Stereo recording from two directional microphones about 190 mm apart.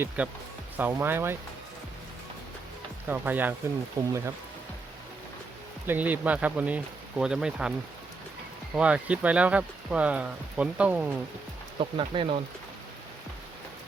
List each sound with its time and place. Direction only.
0.2 s speech: 5° right (ahead or behind)
3.1 s speech: 10° right (ahead or behind)
5.9 s speech: 10° right (ahead or behind)
8.7 s speech: 5° right (ahead or behind)
11.8 s speech: 25° right (ahead or behind)